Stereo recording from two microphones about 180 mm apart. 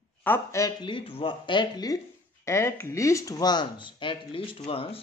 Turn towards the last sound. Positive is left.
turn(degrees=30)  # may be behind; listen again after turning